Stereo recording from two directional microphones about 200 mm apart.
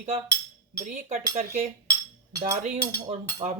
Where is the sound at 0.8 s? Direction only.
40° right (ahead or behind).